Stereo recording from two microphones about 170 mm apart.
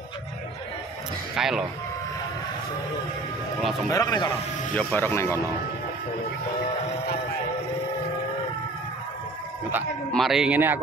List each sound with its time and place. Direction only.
1.3 s speech: 5° right (ahead or behind)
3.9 s a man's voice: 20° left (ahead or behind)
10.1 s a man's voice: centre (ahead or behind)